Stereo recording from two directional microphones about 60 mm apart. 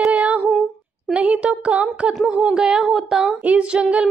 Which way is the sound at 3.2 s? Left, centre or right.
Right.